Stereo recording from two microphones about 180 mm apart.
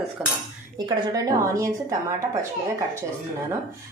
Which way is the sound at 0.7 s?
20° right (ahead or behind).